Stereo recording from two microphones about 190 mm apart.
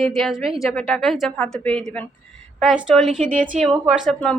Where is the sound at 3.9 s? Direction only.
Centre (ahead or behind).